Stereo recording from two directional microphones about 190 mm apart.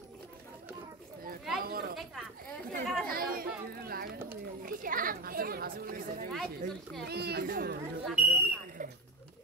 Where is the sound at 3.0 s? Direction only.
50° right (ahead or behind).